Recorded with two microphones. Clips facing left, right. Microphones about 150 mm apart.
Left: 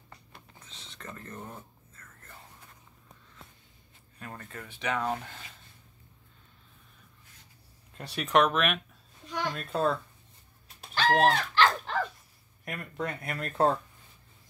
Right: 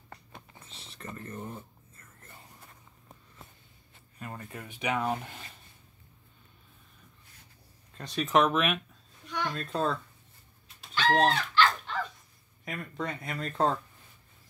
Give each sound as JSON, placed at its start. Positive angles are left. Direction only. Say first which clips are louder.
{"t": 0.8, "sound": "speech", "louder": "right 2 dB", "side_deg": -5}
{"t": 4.2, "sound": "speech", "louder": "right 1 dB", "side_deg": -10}
{"t": 8.0, "sound": "speech", "louder": "even", "side_deg": 5}
{"t": 9.3, "sound": "a woman's voice", "louder": "left 1 dB", "side_deg": 10}
{"t": 11.2, "sound": "dog", "louder": "left 2 dB", "side_deg": 50}
{"t": 12.6, "sound": "speech", "louder": "left 1 dB", "side_deg": 5}